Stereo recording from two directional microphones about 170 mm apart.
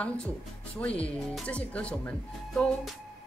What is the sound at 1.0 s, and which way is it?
Speech, 5° left (ahead or behind).